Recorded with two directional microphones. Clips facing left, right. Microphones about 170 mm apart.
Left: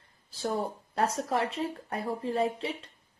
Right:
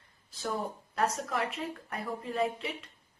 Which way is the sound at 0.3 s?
35° left (ahead or behind).